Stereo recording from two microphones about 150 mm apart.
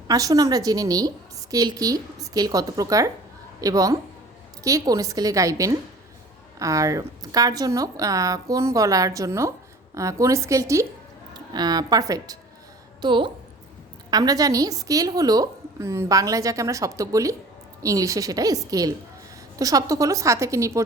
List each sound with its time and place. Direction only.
0.1 s a woman's voice: 25° right (ahead or behind)